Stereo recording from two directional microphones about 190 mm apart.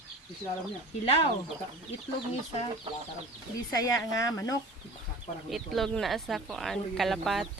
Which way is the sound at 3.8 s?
20° left (ahead or behind).